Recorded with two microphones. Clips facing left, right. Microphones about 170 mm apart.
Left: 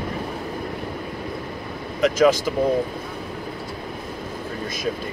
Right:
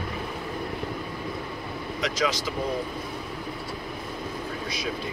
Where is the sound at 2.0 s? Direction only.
50° left (ahead or behind).